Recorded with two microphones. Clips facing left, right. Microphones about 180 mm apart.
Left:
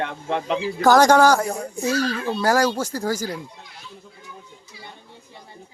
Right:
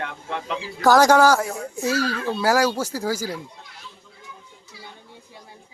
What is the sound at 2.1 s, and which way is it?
Speech, 10° left (ahead or behind).